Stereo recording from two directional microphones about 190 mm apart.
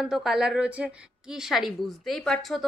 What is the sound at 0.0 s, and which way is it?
A woman's voice, centre (ahead or behind).